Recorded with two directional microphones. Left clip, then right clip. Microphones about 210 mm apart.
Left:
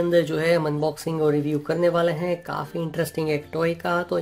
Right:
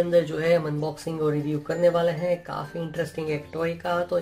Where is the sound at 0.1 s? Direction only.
40° left (ahead or behind).